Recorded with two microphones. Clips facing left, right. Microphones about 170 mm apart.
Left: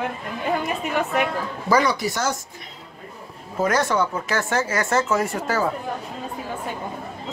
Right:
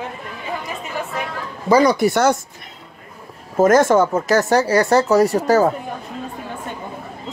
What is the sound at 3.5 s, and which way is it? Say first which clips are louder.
Speech: right 8 dB; 45° right (ahead or behind).